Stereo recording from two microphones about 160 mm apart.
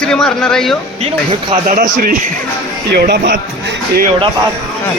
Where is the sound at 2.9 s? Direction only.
90° right.